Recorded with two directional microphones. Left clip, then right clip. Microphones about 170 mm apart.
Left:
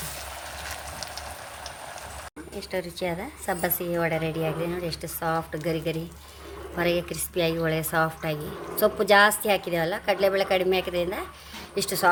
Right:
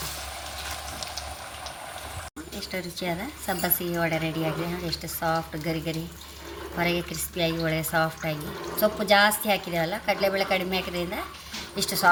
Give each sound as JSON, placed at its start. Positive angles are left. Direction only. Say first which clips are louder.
{"t": 2.6, "sound": "a woman's voice", "louder": "left 3 dB", "side_deg": 50}